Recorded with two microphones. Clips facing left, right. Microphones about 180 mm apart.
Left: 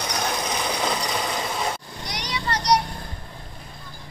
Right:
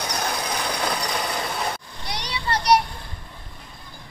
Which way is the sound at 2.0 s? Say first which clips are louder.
Right 1 dB; 15° left (ahead or behind).